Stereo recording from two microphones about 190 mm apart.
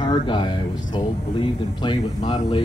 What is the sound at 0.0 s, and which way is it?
Speech, 25° left (ahead or behind).